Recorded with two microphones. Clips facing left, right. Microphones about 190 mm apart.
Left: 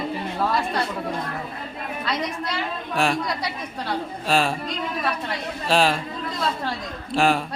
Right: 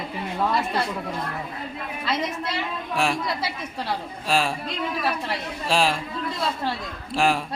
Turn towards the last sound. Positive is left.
turn(degrees=0)  # may be behind; listen again after turning